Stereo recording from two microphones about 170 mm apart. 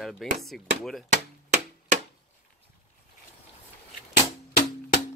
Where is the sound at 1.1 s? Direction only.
45° right (ahead or behind).